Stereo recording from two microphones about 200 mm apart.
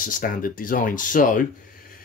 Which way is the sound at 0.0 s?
45° left (ahead or behind).